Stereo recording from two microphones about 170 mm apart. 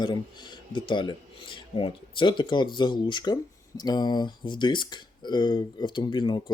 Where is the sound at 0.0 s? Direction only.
25° left (ahead or behind).